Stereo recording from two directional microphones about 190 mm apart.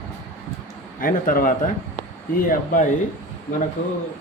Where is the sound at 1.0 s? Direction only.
45° left (ahead or behind).